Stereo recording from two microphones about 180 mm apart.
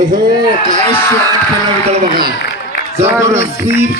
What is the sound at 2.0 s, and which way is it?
Speech, 55° right (ahead or behind).